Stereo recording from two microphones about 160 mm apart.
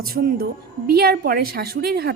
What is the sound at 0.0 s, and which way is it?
Speech, 60° right (ahead or behind).